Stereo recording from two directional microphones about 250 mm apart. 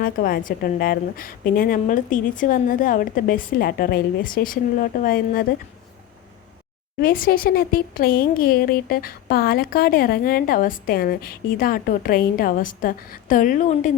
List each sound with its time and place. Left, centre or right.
0.0 s speech: left
7.0 s speech: left